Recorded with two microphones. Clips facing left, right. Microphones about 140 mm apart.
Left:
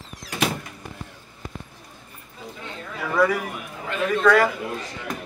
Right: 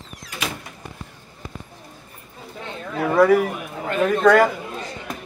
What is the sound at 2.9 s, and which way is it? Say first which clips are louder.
A man's voice: right 6 dB; 50° right (ahead or behind).